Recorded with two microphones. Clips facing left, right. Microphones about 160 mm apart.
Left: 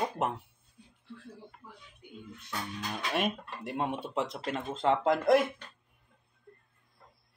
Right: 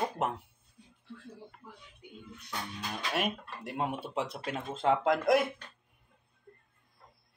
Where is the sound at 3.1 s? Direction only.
Centre (ahead or behind).